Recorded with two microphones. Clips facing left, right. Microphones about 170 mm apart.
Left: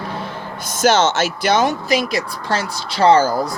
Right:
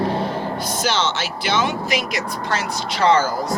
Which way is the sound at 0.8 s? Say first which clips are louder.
Left 9 dB; 45° left (ahead or behind).